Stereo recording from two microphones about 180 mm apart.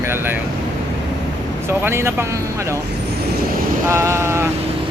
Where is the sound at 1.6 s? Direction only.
15° right (ahead or behind).